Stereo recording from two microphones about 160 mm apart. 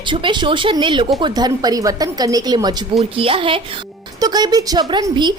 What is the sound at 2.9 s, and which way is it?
A woman's voice, 35° right (ahead or behind).